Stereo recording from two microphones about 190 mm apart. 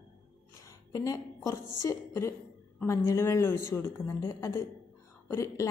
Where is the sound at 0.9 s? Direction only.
20° left (ahead or behind).